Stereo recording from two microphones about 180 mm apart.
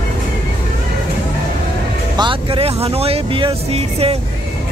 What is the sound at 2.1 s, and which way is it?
Speech, 25° right (ahead or behind).